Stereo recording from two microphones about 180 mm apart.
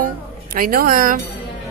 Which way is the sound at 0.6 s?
50° right (ahead or behind).